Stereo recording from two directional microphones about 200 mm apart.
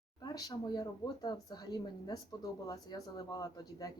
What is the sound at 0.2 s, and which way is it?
Speech, 20° left (ahead or behind).